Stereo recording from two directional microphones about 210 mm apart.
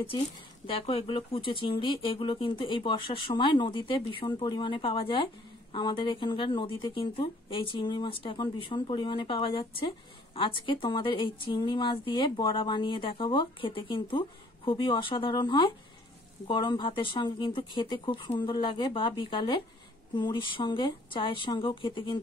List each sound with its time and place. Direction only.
0.7 s speech: 25° left (ahead or behind)